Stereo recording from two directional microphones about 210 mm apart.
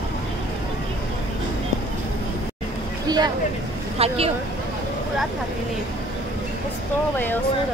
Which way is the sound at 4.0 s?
30° right (ahead or behind).